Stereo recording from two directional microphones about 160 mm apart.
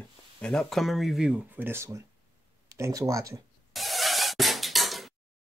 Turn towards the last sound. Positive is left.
turn(degrees=0)  # may be behind; listen again after turning